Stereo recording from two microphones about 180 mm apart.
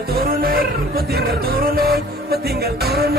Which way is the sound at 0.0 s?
55° right (ahead or behind).